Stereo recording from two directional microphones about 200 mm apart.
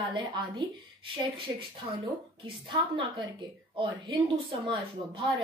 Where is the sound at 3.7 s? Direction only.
25° right (ahead or behind).